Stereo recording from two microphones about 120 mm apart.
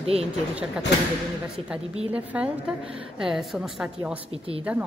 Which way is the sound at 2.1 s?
10° right (ahead or behind).